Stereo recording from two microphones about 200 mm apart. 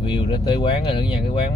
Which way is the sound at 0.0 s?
25° left (ahead or behind).